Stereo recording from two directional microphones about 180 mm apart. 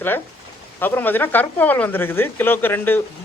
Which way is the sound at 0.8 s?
10° left (ahead or behind).